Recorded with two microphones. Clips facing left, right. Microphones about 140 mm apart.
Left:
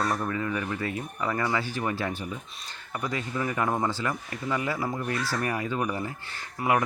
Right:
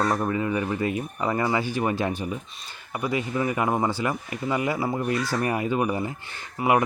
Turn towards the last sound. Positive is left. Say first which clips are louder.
# right 3 dB
turn(degrees=-5)  # may be behind; listen again after turning